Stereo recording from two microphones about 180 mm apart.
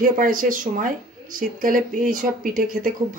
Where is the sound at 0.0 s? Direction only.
50° right (ahead or behind).